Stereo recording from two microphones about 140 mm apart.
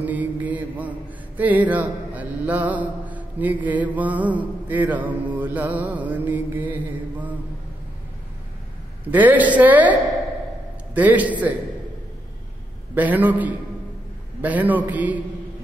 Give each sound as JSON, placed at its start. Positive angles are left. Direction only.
{"t": 0.0, "sound": "mantra", "side_deg": -10}
{"t": 9.1, "sound": "a woman's voice", "side_deg": -10}
{"t": 11.0, "sound": "a woman's voice", "side_deg": -10}
{"t": 12.9, "sound": "a woman's voice", "side_deg": -10}